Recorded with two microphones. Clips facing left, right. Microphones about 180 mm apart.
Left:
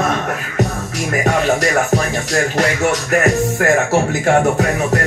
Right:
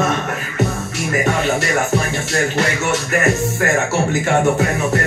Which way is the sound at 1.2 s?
40° left (ahead or behind).